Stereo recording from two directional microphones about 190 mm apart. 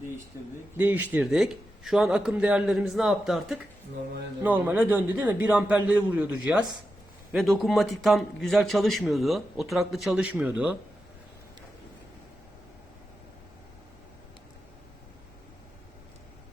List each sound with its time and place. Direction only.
0.3 s a man's voice: 15° right (ahead or behind)